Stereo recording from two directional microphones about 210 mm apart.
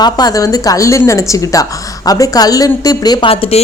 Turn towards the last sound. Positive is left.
turn(degrees=25)  # may be behind; listen again after turning